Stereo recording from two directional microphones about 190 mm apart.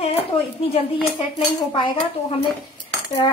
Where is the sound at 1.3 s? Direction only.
25° left (ahead or behind).